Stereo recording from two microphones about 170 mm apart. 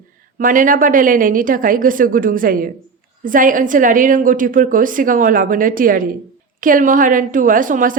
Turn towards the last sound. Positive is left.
turn(degrees=-50)  # may be behind; listen again after turning